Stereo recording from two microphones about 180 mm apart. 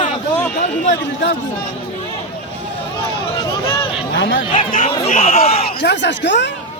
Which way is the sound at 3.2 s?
25° left (ahead or behind).